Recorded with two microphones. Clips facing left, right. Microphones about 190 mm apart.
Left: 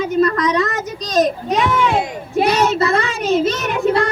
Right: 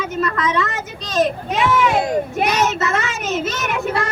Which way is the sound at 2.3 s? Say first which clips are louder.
Left 4 dB; 30° left (ahead or behind).